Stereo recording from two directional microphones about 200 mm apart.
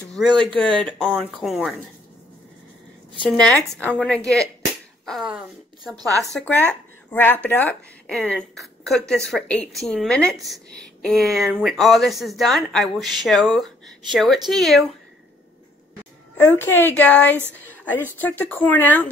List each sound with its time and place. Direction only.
0.4 s a woman's voice: 5° left (ahead or behind)
3.3 s a woman's voice: 5° left (ahead or behind)
5.0 s a sound: centre (ahead or behind)
5.9 s a woman's voice: 15° right (ahead or behind)
6.4 s a woman's voice: 5° left (ahead or behind)
16.3 s a woman's voice: 10° left (ahead or behind)